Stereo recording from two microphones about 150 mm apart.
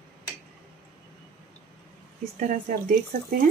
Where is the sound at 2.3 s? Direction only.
55° right (ahead or behind); by 3.4 s 75° right (ahead or behind).